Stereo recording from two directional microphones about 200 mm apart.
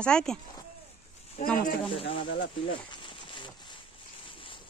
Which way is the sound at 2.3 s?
65° left (ahead or behind).